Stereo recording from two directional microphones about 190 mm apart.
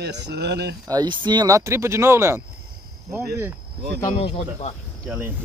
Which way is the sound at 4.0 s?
35° left (ahead or behind).